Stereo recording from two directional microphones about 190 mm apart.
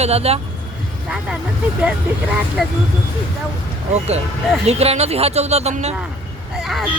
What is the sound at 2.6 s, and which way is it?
Speech, centre (ahead or behind).